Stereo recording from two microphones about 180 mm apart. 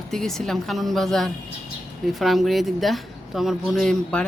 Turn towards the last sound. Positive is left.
turn(degrees=0)  # may be behind; listen again after turning